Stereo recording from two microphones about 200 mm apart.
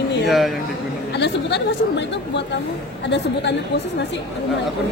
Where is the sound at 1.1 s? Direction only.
60° left (ahead or behind).